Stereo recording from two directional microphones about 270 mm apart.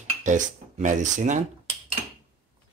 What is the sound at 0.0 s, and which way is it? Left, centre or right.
Cutlery, right.